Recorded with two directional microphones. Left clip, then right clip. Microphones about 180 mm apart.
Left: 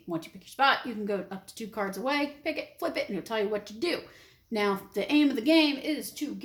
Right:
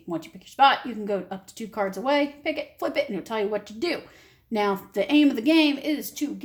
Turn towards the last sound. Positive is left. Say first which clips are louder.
# right 5 dB
turn(degrees=-40)  # may be behind; listen again after turning